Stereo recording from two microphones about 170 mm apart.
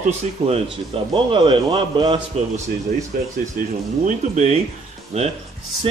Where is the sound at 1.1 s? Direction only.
30° right (ahead or behind).